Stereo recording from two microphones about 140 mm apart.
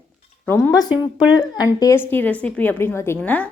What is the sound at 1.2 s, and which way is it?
Speech, 30° left (ahead or behind).